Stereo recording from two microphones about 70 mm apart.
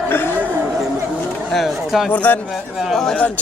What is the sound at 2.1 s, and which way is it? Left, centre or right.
Speech, left.